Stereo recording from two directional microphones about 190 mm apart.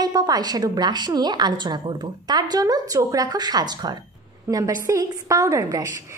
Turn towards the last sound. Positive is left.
turn(degrees=-20)  # may be behind; listen again after turning